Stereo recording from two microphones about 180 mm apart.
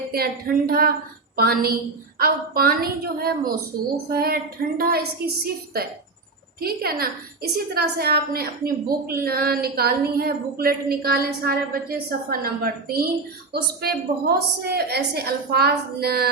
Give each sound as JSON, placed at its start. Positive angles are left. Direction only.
{"t": 0.1, "sound": "a woman's voice", "side_deg": -55}